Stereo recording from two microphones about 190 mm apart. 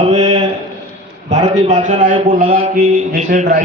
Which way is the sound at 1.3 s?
35° right (ahead or behind).